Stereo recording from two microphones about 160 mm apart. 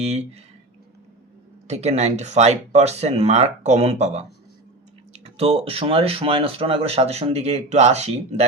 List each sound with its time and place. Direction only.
0.0 s speech: 40° right (ahead or behind)
1.6 s speech: 45° right (ahead or behind)